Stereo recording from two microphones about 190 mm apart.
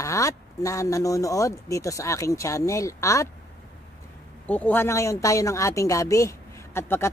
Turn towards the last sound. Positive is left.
turn(degrees=15)  # may be behind; listen again after turning